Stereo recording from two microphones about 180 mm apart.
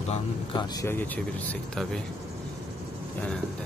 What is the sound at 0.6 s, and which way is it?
Speech, 15° left (ahead or behind).